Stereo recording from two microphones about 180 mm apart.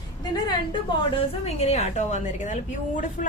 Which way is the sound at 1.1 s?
35° left (ahead or behind).